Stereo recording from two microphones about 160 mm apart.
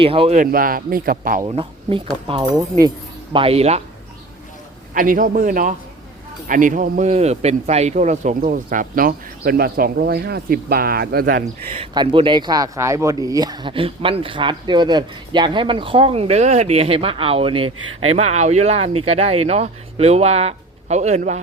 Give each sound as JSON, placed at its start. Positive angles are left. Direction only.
{"t": 0.0, "sound": "speech", "side_deg": -35}
{"t": 0.3, "sound": "speech", "side_deg": -60}
{"t": 1.4, "sound": "speech", "side_deg": -30}
{"t": 3.3, "sound": "speech", "side_deg": -40}
{"t": 4.9, "sound": "speech", "side_deg": -60}
{"t": 7.1, "sound": "speech", "side_deg": -40}
{"t": 11.7, "sound": "speech", "side_deg": -35}
{"t": 18.2, "sound": "speech", "side_deg": -45}